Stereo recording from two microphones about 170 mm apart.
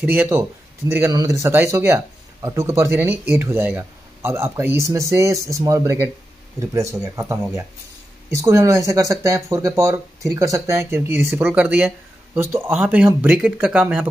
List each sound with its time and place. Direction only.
0.0 s speech: 15° right (ahead or behind)